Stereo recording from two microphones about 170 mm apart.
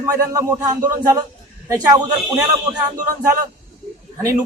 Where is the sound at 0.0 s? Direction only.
20° right (ahead or behind).